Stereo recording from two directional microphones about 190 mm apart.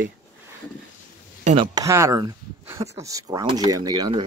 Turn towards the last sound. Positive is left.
turn(degrees=-20)  # may be behind; listen again after turning